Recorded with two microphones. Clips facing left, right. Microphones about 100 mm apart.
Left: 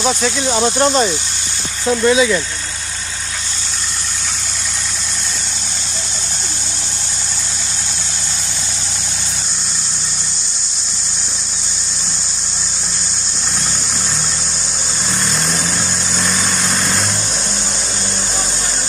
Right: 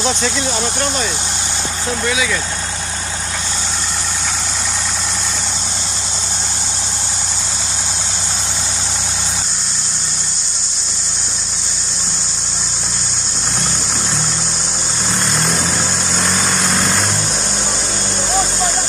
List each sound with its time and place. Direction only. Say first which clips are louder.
0.5 s speech: left 5 dB; 30° left (ahead or behind)
2.0 s speech: left 8 dB; 30° left (ahead or behind)
16.2 s vehicle: right 1 dB; centre (ahead or behind)